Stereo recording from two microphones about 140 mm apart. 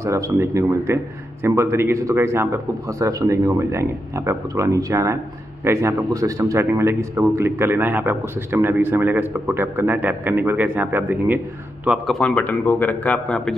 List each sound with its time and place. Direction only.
0.0 s a man's voice: 20° right (ahead or behind); by 12.2 s 5° right (ahead or behind)
12.2 s speech: 10° left (ahead or behind)